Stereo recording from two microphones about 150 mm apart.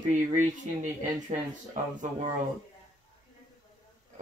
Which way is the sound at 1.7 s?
55° right (ahead or behind).